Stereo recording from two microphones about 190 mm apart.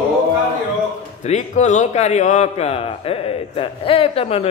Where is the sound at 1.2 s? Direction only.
35° left (ahead or behind).